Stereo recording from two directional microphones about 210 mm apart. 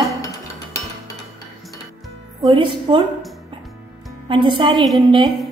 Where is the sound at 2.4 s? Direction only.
25° right (ahead or behind).